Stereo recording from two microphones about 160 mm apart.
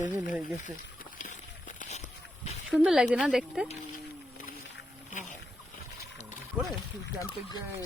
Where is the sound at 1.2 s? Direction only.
55° left (ahead or behind).